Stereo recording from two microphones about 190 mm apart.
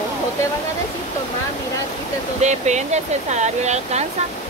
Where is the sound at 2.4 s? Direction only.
35° right (ahead or behind).